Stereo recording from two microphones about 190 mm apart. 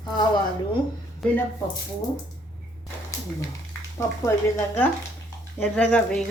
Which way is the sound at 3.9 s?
15° left (ahead or behind).